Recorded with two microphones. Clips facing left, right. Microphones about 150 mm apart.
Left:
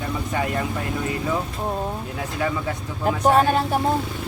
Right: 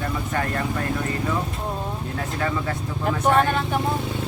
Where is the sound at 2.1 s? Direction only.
15° left (ahead or behind).